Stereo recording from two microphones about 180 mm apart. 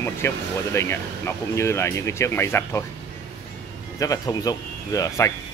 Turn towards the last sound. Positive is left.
turn(degrees=20)  # may be behind; listen again after turning